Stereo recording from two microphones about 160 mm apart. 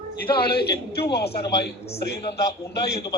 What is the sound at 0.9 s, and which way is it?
Speech, 85° left.